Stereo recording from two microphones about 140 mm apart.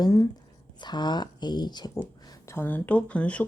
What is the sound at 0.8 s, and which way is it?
Speech, 30° left (ahead or behind).